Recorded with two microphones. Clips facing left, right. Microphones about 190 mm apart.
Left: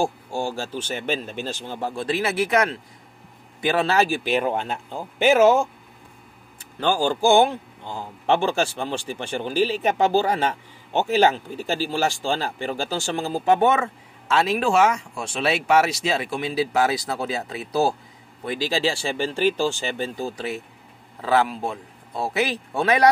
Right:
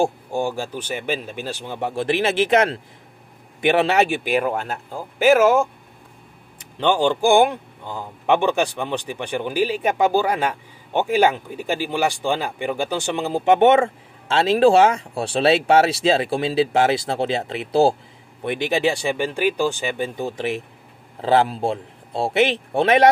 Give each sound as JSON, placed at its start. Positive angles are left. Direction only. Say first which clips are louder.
{"t": 0.0, "sound": "speech", "louder": "right 4 dB", "side_deg": -20}
{"t": 3.8, "sound": "speech", "louder": "right 2 dB", "side_deg": -20}
{"t": 4.2, "sound": "speech", "louder": "right 1 dB", "side_deg": -5}
{"t": 6.8, "sound": "speech", "louder": "right 3 dB", "side_deg": -20}